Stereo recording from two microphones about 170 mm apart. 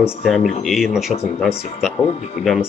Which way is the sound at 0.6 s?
Centre (ahead or behind).